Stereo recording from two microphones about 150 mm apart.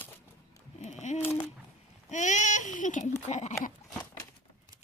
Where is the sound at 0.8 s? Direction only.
50° left (ahead or behind).